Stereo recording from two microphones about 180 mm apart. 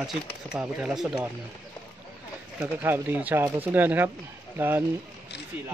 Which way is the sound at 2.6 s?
10° right (ahead or behind).